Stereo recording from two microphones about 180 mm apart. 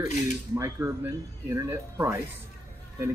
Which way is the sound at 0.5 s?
15° right (ahead or behind).